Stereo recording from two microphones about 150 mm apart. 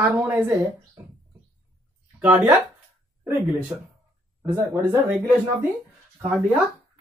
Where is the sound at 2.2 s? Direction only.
10° right (ahead or behind).